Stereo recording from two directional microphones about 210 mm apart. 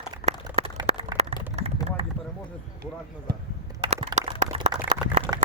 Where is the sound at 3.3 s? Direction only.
50° right (ahead or behind).